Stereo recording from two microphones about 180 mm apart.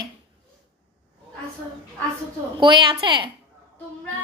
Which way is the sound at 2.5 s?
25° right (ahead or behind).